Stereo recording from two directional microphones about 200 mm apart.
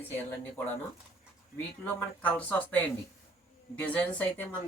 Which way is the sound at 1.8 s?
5° left (ahead or behind).